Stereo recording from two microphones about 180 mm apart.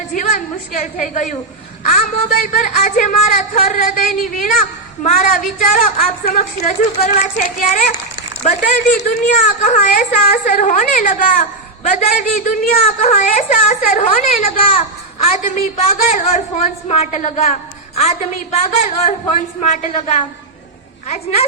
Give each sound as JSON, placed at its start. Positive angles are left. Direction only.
{"t": 0.1, "sound": "a woman's voice", "side_deg": 45}
{"t": 14.5, "sound": "a woman's voice", "side_deg": 30}